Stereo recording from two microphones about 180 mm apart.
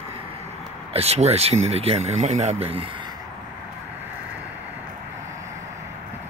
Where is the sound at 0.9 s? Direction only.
35° right (ahead or behind).